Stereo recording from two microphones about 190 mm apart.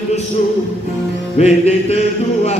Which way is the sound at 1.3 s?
35° left (ahead or behind).